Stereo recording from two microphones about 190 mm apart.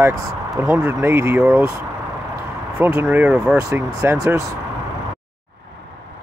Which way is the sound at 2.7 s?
10° right (ahead or behind).